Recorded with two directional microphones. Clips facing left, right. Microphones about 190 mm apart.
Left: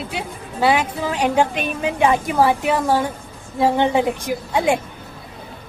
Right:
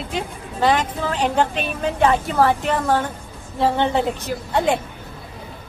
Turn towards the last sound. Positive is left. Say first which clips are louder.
# left 1 dB
turn(degrees=10)  # may be behind; listen again after turning